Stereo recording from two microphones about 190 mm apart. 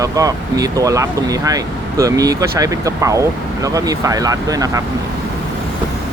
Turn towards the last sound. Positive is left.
turn(degrees=-20)  # may be behind; listen again after turning